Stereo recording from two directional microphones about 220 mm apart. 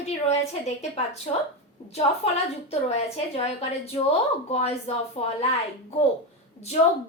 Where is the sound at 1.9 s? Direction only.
30° left (ahead or behind).